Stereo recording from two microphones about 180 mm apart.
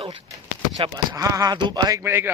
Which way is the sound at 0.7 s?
20° right (ahead or behind).